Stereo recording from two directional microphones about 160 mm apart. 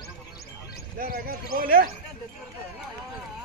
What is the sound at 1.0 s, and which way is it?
Speech, 65° right (ahead or behind).